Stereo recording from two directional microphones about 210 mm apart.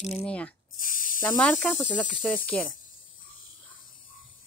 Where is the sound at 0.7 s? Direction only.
40° left (ahead or behind).